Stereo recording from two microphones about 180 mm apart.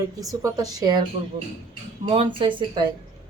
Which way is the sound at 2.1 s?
30° right (ahead or behind).